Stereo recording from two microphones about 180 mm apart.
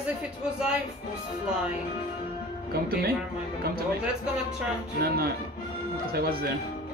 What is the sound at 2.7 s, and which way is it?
Speech, 55° right (ahead or behind).